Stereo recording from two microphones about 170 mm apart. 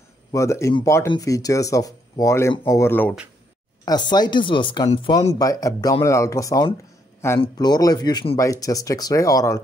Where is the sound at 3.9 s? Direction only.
25° left (ahead or behind).